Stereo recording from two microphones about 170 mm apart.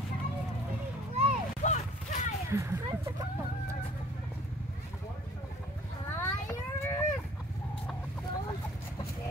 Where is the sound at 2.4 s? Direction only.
15° right (ahead or behind).